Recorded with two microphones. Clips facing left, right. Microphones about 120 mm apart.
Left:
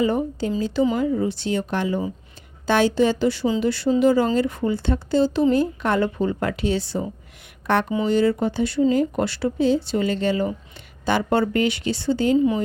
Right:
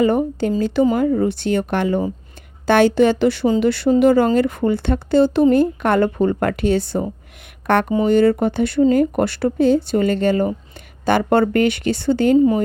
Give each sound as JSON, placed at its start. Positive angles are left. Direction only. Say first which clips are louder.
{"t": 0.0, "sound": "speech", "louder": "right 5 dB", "side_deg": -60}